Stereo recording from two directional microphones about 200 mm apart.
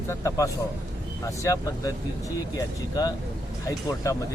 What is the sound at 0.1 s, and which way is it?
Speech, 15° left (ahead or behind).